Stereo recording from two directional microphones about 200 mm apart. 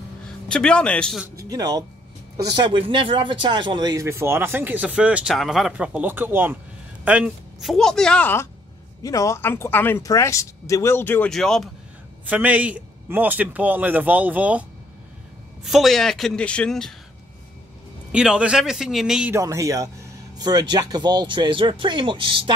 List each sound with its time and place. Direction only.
0.5 s speech: 5° left (ahead or behind)
1.2 s speech: 15° right (ahead or behind)
15.6 s speech: centre (ahead or behind)
18.1 s speech: 5° right (ahead or behind)
19.4 s speech: 15° right (ahead or behind)